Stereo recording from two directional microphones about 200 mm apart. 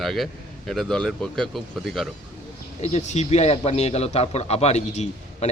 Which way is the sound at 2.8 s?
35° left (ahead or behind).